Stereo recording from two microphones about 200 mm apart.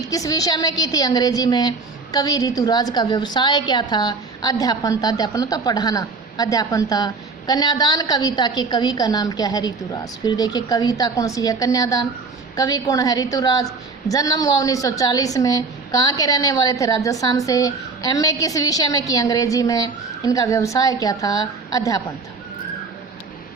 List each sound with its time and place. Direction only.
0.1 s a woman's voice: 15° left (ahead or behind)